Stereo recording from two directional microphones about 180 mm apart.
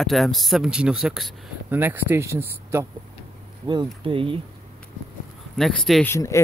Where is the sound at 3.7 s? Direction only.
25° right (ahead or behind).